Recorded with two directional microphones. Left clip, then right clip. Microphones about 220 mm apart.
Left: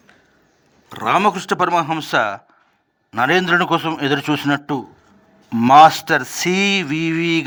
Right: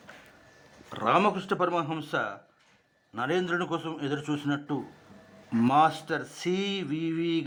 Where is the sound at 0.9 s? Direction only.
40° left (ahead or behind).